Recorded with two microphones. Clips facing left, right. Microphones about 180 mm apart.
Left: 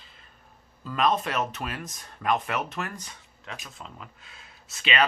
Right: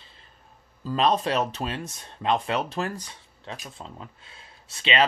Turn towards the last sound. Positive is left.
turn(degrees=-30)  # may be behind; listen again after turning